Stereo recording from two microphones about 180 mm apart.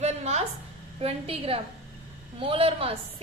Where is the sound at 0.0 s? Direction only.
35° right (ahead or behind).